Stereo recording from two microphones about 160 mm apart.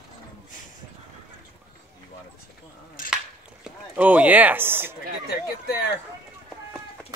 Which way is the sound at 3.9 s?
10° right (ahead or behind).